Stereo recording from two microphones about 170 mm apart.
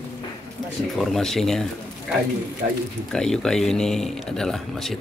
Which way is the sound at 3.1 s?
5° left (ahead or behind).